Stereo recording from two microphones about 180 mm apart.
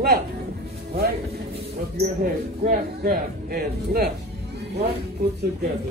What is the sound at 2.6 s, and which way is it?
Speech, 55° right (ahead or behind).